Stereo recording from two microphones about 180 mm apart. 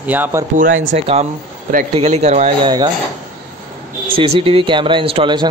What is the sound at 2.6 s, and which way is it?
Speech, 25° right (ahead or behind).